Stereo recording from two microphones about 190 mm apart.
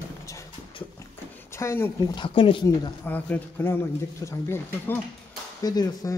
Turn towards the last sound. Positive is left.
turn(degrees=20)  # may be behind; listen again after turning